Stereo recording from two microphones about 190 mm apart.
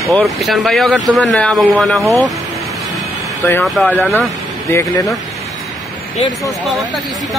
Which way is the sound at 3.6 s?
5° left (ahead or behind).